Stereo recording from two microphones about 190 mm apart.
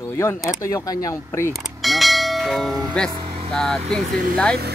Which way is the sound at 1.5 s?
Centre (ahead or behind).